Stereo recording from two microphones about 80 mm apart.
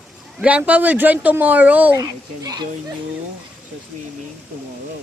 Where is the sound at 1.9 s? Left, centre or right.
Right.